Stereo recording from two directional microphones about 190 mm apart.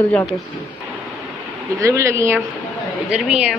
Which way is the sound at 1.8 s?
15° right (ahead or behind).